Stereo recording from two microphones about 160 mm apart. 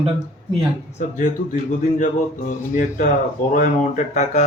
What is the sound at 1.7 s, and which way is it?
A man's voice, 55° left (ahead or behind).